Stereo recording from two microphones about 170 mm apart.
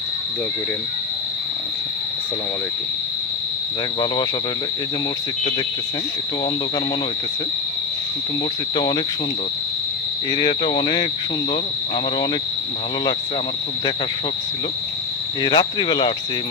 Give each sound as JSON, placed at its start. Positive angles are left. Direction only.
{"t": 8.7, "sound": "speech", "side_deg": 25}
{"t": 10.3, "sound": "speech", "side_deg": 25}
{"t": 15.4, "sound": "speech", "side_deg": 25}